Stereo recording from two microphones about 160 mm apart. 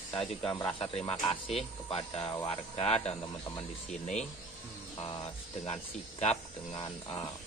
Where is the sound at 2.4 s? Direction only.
40° left (ahead or behind).